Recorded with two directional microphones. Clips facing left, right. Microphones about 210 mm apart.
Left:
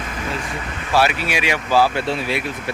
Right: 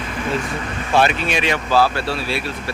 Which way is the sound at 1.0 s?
10° left (ahead or behind).